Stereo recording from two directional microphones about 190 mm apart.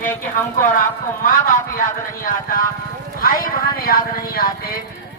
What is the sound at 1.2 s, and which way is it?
Speech, 45° left (ahead or behind).